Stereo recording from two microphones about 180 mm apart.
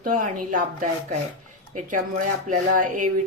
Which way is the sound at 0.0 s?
50° right (ahead or behind).